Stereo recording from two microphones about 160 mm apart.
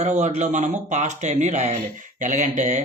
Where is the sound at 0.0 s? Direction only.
45° right (ahead or behind).